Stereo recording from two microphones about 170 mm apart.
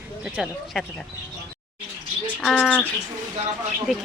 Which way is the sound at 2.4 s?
Centre (ahead or behind).